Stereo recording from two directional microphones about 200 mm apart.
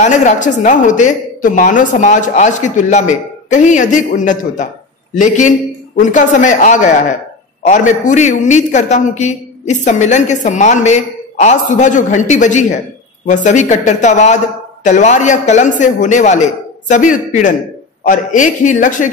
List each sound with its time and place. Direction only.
0.0 s a man's voice: 35° left (ahead or behind)